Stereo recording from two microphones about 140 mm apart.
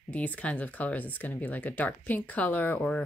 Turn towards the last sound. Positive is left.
turn(degrees=10)  # may be behind; listen again after turning